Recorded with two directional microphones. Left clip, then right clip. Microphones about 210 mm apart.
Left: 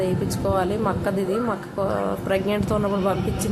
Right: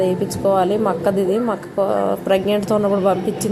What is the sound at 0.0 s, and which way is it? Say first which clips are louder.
A woman's voice: right 6 dB; 15° right (ahead or behind).